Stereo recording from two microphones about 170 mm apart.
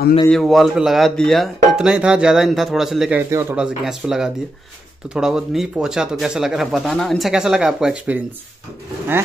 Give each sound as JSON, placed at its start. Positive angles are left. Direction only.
{"t": 0.3, "sound": "speech", "side_deg": 0}
{"t": 3.6, "sound": "speech", "side_deg": -5}